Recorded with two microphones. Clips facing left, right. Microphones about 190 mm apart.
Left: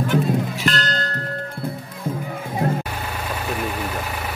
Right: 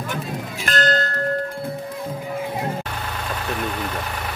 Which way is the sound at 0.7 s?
50° right (ahead or behind).